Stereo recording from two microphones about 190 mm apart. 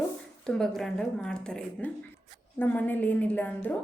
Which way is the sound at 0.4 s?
Centre (ahead or behind).